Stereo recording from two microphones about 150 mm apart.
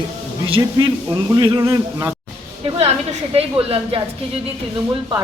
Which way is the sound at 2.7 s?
45° right (ahead or behind).